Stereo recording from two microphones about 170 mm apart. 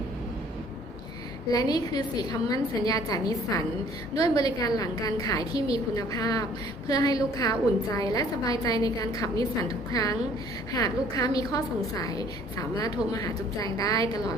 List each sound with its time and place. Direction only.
1.5 s a woman's voice: 20° left (ahead or behind)